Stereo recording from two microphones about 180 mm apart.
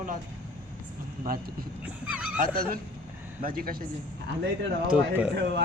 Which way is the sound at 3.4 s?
55° right (ahead or behind).